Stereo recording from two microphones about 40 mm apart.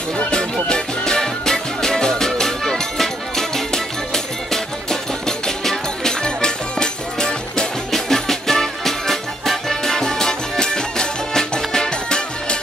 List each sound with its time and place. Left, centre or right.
0.2 s music: left
7.9 s music: centre